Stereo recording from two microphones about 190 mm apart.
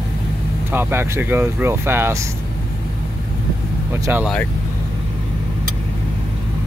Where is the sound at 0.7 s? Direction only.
10° right (ahead or behind).